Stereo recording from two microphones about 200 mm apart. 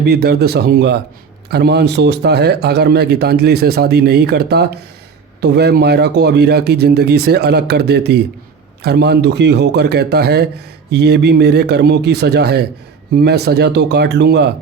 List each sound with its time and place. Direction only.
0.0 s speech: 55° right (ahead or behind)